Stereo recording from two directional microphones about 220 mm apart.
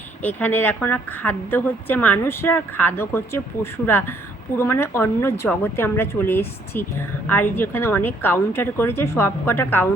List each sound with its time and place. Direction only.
0.2 s a woman's voice: 5° left (ahead or behind)